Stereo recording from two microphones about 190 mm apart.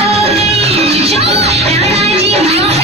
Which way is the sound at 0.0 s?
30° right (ahead or behind).